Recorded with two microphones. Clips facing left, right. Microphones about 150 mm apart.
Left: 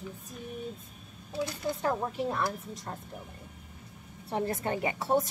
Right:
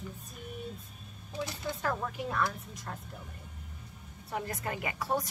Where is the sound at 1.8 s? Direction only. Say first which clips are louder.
Left 3 dB; 20° left (ahead or behind).